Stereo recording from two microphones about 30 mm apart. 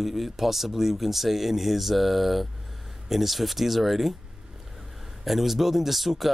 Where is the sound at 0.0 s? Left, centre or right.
Centre.